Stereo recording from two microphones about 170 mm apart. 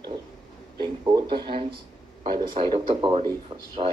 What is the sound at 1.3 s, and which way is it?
Speech, 30° right (ahead or behind).